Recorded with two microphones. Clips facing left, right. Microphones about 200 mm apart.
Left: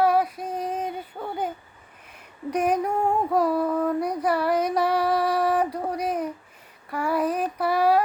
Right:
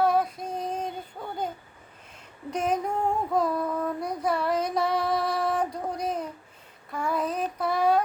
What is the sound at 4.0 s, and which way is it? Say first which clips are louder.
Child singing: left 4 dB; 10° left (ahead or behind).